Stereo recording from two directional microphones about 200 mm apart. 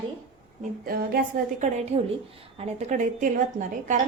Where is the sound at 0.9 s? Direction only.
50° right (ahead or behind).